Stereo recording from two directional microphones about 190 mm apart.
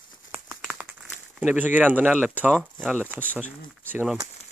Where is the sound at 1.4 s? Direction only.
10° right (ahead or behind).